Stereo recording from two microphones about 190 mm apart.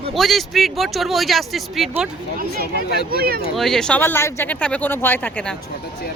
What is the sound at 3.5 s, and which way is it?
Speech, centre (ahead or behind).